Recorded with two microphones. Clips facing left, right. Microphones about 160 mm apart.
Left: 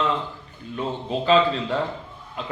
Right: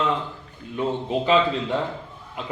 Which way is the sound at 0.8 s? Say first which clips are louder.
Right 3 dB; 15° right (ahead or behind).